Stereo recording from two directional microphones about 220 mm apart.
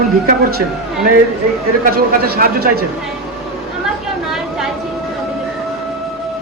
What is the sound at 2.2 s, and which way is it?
Speech, 45° right (ahead or behind).